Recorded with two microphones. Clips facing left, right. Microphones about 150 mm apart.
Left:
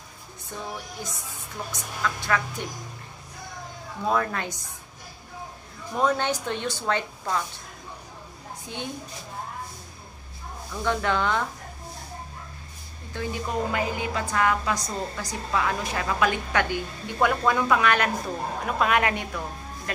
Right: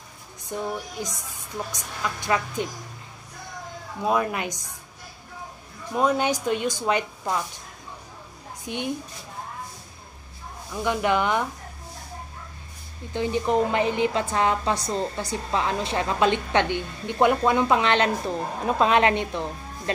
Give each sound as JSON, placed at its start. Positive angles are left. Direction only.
{"t": 0.5, "sound": "a woman's voice", "side_deg": -15}
{"t": 4.0, "sound": "a woman's voice", "side_deg": -15}
{"t": 5.9, "sound": "a woman's voice", "side_deg": -10}
{"t": 8.6, "sound": "a woman's voice", "side_deg": -20}
{"t": 10.7, "sound": "a woman's voice", "side_deg": -15}
{"t": 13.1, "sound": "a woman's voice", "side_deg": -20}